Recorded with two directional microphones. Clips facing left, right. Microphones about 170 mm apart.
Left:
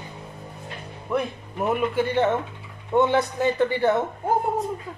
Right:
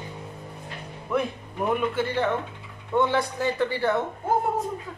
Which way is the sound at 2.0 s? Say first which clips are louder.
Left 4 dB; 20° left (ahead or behind).